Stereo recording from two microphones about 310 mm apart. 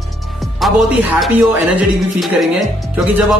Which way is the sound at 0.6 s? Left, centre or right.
Centre.